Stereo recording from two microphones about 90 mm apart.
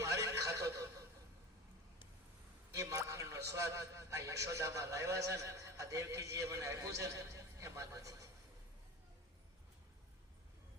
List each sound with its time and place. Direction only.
0.0 s neigh: 35° right (ahead or behind)
2.7 s a man's voice: 40° right (ahead or behind)